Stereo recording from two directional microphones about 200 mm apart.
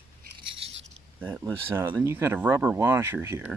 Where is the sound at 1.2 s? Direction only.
10° right (ahead or behind).